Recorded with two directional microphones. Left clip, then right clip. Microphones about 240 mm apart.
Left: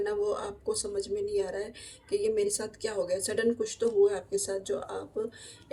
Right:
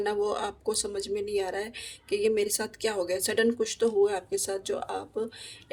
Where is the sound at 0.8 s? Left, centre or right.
Right.